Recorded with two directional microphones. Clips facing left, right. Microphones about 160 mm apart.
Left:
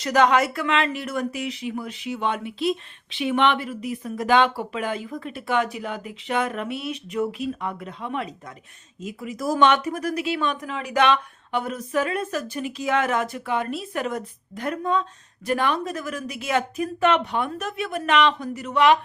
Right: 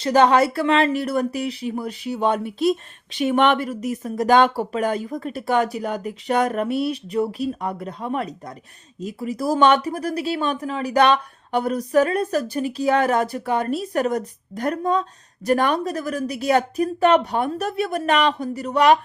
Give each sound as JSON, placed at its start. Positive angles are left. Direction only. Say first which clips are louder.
{"t": 0.0, "sound": "speech", "louder": "right 3 dB", "side_deg": -30}